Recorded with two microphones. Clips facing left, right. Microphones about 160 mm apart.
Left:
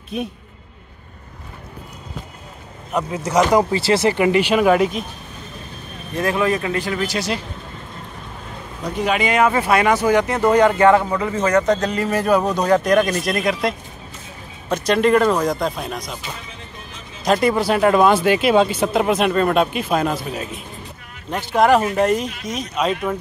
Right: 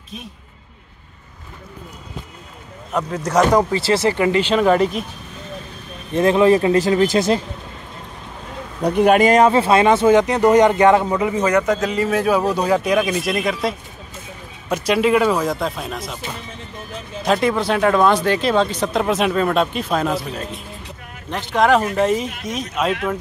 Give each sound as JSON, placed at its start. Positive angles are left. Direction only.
{"t": 2.9, "sound": "speech", "side_deg": 5}
{"t": 6.1, "sound": "speech", "side_deg": -25}
{"t": 8.8, "sound": "speech", "side_deg": -55}
{"t": 9.5, "sound": "speech", "side_deg": -25}
{"t": 11.8, "sound": "speech", "side_deg": 0}
{"t": 17.2, "sound": "speech", "side_deg": 0}